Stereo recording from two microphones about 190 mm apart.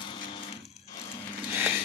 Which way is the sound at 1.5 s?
10° right (ahead or behind).